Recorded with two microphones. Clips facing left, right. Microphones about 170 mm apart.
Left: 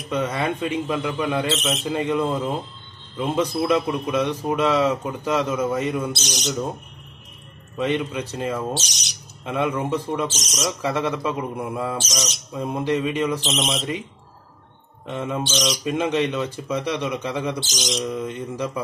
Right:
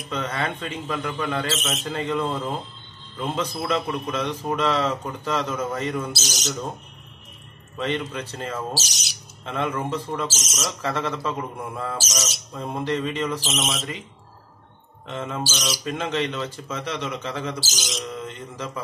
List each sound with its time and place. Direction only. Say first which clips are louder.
0.1 s a man's voice: left 4 dB; 15° left (ahead or behind)
6.1 s speech: left 3 dB; centre (ahead or behind)
7.7 s a man's voice: left 4 dB; 15° left (ahead or behind)
8.5 s speech: left 3 dB; 5° right (ahead or behind)
9.4 s a man's voice: left 3 dB; 10° left (ahead or behind)
10.2 s speech: left 3 dB; 5° right (ahead or behind)
10.7 s a man's voice: left 3 dB; 10° left (ahead or behind)
12.0 s speech: left 2 dB; 5° right (ahead or behind)
12.5 s a man's voice: left 3 dB; 15° left (ahead or behind)
13.4 s speech: left 3 dB; 5° right (ahead or behind)
15.0 s a man's voice: left 3 dB; 15° left (ahead or behind)
17.6 s speech: left 5 dB; 5° right (ahead or behind)
18.0 s a man's voice: left 6 dB; 15° left (ahead or behind)